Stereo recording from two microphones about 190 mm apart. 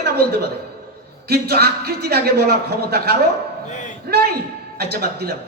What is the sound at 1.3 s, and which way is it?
A man's voice, 55° right (ahead or behind).